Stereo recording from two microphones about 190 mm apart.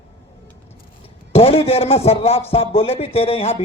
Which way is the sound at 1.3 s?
30° left (ahead or behind).